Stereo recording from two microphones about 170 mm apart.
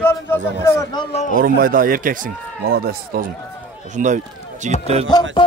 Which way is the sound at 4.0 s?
50° right (ahead or behind).